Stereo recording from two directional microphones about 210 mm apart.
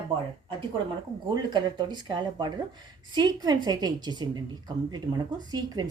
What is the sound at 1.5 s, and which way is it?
A woman's voice, 20° right (ahead or behind).